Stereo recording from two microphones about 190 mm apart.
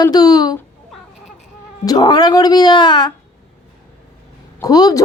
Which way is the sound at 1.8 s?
20° left (ahead or behind).